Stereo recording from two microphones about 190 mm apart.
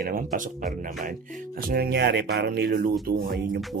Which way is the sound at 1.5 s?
50° right (ahead or behind).